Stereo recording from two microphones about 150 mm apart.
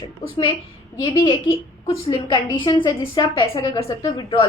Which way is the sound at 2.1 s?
30° left (ahead or behind).